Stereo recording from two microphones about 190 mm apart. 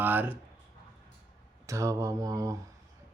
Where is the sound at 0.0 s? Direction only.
10° right (ahead or behind).